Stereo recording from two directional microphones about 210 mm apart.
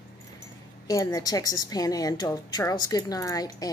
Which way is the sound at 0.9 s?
15° left (ahead or behind).